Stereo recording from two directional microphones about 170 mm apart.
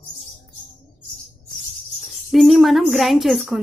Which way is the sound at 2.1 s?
Centre (ahead or behind).